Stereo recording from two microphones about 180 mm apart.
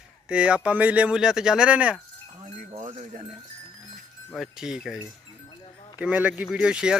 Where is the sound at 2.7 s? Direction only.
35° right (ahead or behind).